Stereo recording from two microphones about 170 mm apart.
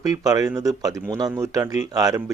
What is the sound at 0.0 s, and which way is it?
Speech, 20° right (ahead or behind).